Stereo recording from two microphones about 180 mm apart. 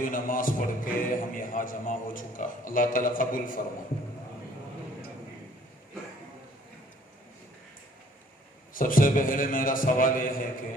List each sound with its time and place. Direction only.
0.0 s a man's voice: 50° left (ahead or behind)
8.7 s a man's voice: 50° left (ahead or behind)